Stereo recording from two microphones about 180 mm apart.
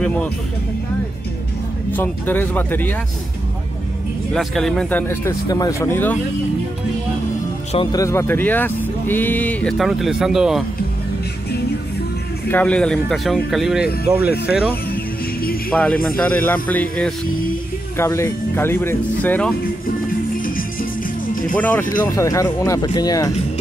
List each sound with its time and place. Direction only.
1.9 s speech: 10° left (ahead or behind)
4.3 s speech: centre (ahead or behind)
7.7 s speech: 25° left (ahead or behind); by 10.6 s centre (ahead or behind)
12.4 s speech: 10° left (ahead or behind)
13.8 s speech: 60° left (ahead or behind)
15.7 s speech: 5° left (ahead or behind)
20.3 s music: 50° left (ahead or behind)
21.5 s speech: 10° left (ahead or behind)